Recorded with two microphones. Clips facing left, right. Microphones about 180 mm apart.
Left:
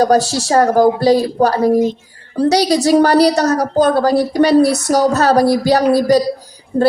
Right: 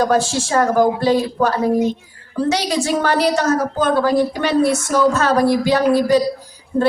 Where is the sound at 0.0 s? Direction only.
40° left (ahead or behind).